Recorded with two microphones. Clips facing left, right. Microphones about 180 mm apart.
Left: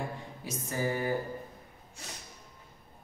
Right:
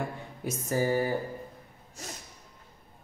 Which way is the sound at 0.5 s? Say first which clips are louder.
Right 5 dB; 40° right (ahead or behind).